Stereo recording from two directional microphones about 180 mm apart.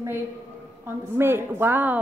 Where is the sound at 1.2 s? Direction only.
15° right (ahead or behind).